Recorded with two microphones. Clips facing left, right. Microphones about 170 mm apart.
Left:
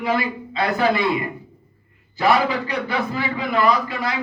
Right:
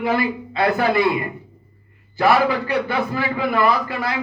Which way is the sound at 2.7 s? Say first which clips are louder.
Right 3 dB; 55° right (ahead or behind).